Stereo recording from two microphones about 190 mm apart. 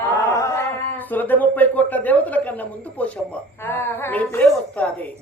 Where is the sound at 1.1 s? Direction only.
10° left (ahead or behind).